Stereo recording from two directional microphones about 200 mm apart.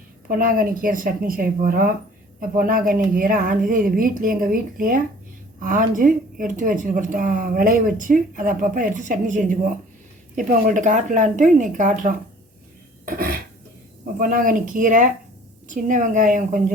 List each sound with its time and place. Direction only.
0.3 s a woman's voice: 45° right (ahead or behind)
13.1 s a sound: 50° right (ahead or behind)
14.2 s speech: 45° right (ahead or behind)